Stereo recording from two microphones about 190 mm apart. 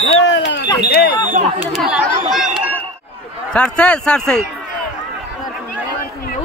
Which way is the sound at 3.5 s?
5° left (ahead or behind).